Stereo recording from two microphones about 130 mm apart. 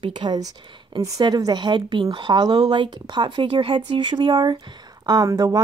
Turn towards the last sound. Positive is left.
turn(degrees=-30)  # may be behind; listen again after turning